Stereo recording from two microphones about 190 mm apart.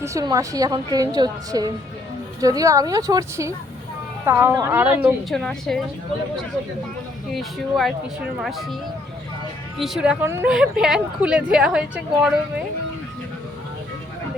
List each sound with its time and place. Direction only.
0.0 s a woman's voice: 15° right (ahead or behind)
5.3 s speech: centre (ahead or behind)
7.3 s speech: centre (ahead or behind)
9.7 s speech: centre (ahead or behind)